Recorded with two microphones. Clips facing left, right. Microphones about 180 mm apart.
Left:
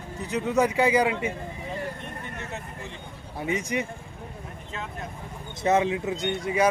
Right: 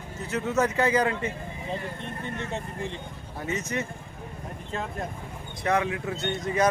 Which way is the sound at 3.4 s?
10° left (ahead or behind).